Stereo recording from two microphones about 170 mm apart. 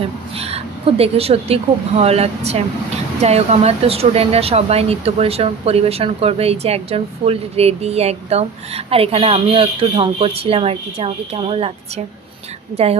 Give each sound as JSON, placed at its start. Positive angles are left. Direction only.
{"t": 0.0, "sound": "speech", "side_deg": -35}
{"t": 12.7, "sound": "speech", "side_deg": -35}